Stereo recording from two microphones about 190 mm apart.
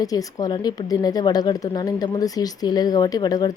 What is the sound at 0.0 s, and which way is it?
Speech, 20° left (ahead or behind).